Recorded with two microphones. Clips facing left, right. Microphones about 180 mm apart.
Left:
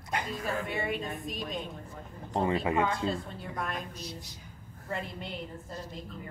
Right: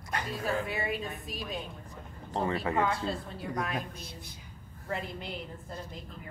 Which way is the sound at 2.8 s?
Centre (ahead or behind).